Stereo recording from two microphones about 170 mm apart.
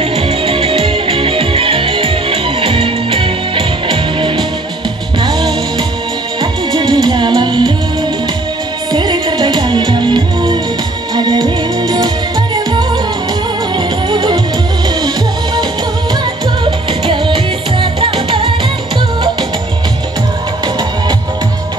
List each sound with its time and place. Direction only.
0.0 s music: 35° right (ahead or behind)
8.9 s music: 25° right (ahead or behind)
16.6 s music: 30° right (ahead or behind)